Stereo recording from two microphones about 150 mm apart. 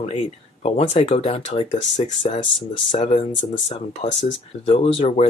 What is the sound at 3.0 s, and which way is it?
Speech, 45° left (ahead or behind).